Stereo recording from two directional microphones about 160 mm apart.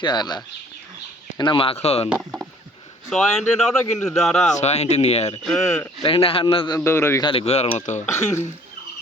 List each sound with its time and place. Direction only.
0.0 s a man's voice: 25° left (ahead or behind)
3.1 s speech: centre (ahead or behind)
4.6 s speech: 45° left (ahead or behind)
5.5 s speech: 5° left (ahead or behind)
6.0 s a man's voice: 35° left (ahead or behind)
6.7 s a man's voice: 15° left (ahead or behind)
7.3 s a man's voice: 40° left (ahead or behind)
8.1 s speech: 20° left (ahead or behind)